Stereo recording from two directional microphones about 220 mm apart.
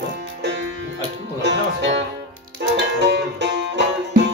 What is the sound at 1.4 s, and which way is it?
Music, 55° right (ahead or behind).